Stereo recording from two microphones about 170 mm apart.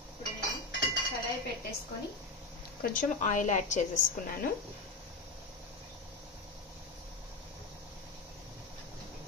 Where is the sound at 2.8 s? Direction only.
50° left (ahead or behind).